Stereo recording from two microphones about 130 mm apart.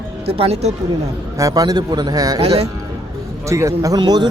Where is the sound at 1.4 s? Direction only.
30° right (ahead or behind).